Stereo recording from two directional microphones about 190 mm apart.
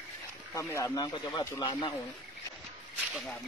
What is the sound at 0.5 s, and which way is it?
Speech, 15° left (ahead or behind).